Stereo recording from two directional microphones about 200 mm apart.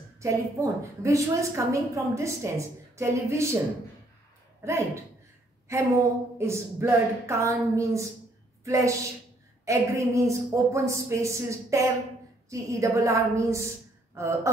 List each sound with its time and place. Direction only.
0.2 s a woman's voice: 15° right (ahead or behind)
4.6 s a woman's voice: 15° right (ahead or behind)